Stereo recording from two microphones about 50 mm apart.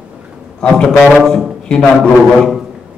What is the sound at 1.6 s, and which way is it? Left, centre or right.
Speech, centre.